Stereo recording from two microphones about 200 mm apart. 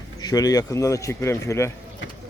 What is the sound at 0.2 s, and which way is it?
Speech, 20° left (ahead or behind).